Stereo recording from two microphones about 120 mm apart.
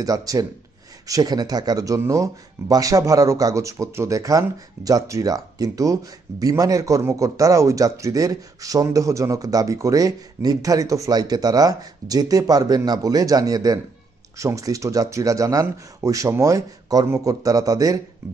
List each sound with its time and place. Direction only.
0.0 s speech: 30° right (ahead or behind)